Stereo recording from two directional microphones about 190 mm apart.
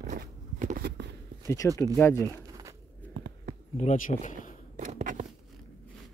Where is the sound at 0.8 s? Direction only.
60° right (ahead or behind).